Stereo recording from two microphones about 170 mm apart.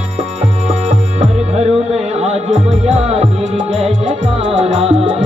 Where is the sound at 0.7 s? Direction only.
45° right (ahead or behind).